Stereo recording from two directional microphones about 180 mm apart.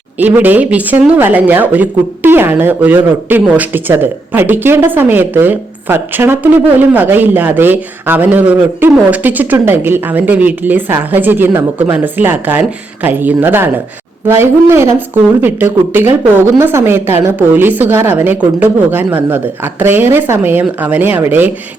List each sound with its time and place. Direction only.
0.2 s speech: 10° right (ahead or behind)